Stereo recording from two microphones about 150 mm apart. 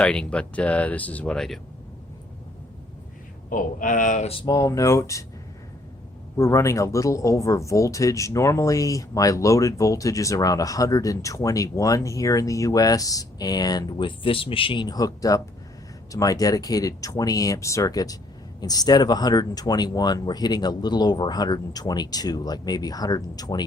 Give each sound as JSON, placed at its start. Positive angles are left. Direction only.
{"t": 0.0, "sound": "speech", "side_deg": 5}
{"t": 3.5, "sound": "speech", "side_deg": 65}
{"t": 4.4, "sound": "speech", "side_deg": 25}
{"t": 6.3, "sound": "speech", "side_deg": 20}